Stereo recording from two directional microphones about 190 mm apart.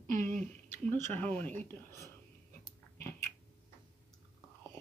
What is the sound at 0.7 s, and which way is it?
Speech, 10° left (ahead or behind).